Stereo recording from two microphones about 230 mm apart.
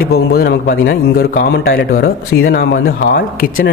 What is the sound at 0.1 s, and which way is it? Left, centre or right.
A man's voice, left.